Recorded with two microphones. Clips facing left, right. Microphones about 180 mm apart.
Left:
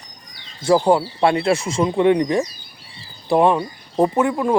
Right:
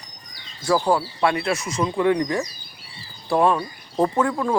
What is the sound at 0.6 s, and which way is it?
Speech, 20° left (ahead or behind).